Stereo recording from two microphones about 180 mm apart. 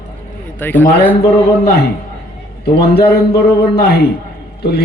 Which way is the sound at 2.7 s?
60° left (ahead or behind).